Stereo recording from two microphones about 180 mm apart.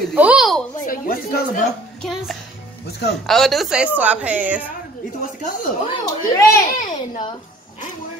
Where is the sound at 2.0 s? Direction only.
Centre (ahead or behind).